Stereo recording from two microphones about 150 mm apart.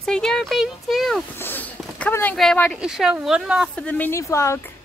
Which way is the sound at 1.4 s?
15° left (ahead or behind).